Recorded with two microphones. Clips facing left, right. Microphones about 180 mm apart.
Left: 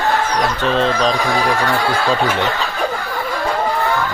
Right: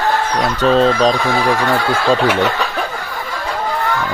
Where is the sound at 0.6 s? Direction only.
40° right (ahead or behind).